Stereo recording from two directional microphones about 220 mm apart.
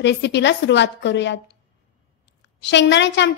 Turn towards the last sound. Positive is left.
turn(degrees=55)  # may be behind; listen again after turning